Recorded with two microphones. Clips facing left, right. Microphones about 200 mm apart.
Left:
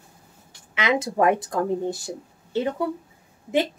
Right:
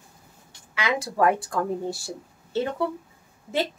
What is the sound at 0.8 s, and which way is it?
Speech, 20° left (ahead or behind).